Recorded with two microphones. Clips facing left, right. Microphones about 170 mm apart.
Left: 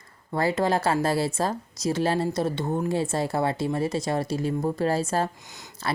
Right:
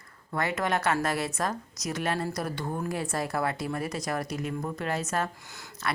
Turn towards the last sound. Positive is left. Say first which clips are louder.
# left 1 dB
turn(degrees=20)  # may be behind; listen again after turning